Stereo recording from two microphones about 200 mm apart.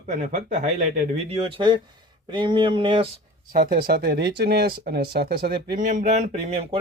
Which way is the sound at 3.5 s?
50° right (ahead or behind).